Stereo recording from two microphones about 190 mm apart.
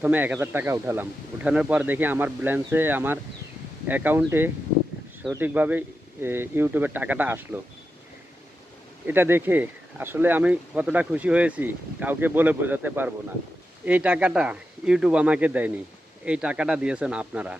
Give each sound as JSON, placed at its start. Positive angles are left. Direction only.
{"t": 0.0, "sound": "speech", "side_deg": -10}
{"t": 9.0, "sound": "speech", "side_deg": -10}